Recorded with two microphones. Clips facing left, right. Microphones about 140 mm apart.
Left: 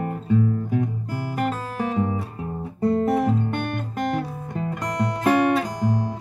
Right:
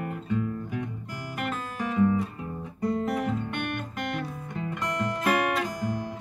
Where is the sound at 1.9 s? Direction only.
30° left (ahead or behind).